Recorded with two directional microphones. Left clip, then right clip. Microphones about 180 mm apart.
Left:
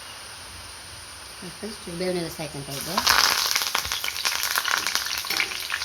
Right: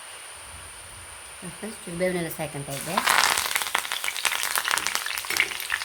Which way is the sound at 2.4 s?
25° right (ahead or behind).